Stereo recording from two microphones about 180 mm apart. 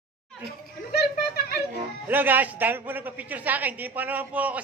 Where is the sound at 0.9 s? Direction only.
60° left (ahead or behind).